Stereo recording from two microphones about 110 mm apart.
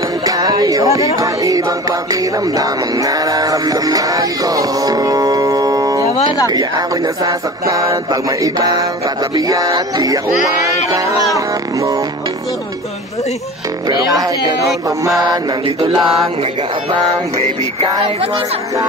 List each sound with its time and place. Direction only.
0.2 s a sound: 35° right (ahead or behind)
2.4 s music: 35° right (ahead or behind)
7.2 s mantra: 30° right (ahead or behind)
11.3 s speech: 30° right (ahead or behind)
13.8 s mantra: 35° right (ahead or behind)
18.0 s speech: 60° right (ahead or behind)